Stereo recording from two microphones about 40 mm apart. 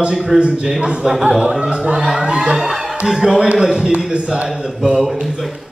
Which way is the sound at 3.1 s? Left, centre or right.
Centre.